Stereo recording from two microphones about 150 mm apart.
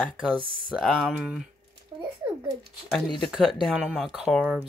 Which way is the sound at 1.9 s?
30° right (ahead or behind).